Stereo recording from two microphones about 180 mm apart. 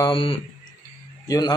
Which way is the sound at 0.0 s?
30° left (ahead or behind).